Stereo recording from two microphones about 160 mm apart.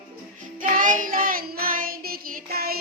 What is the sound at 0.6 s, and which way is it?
Child singing, 55° right (ahead or behind).